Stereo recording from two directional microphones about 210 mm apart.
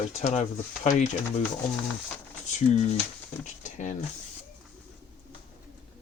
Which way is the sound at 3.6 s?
35° left (ahead or behind).